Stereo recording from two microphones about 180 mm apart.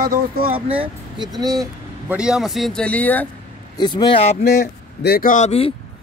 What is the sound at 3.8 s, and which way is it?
Speech, 25° left (ahead or behind).